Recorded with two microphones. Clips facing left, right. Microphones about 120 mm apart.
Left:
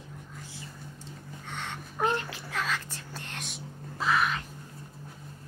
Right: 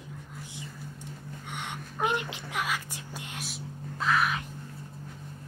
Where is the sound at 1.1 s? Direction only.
15° right (ahead or behind).